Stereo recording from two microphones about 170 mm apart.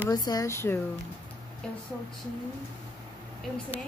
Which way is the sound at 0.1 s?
20° left (ahead or behind).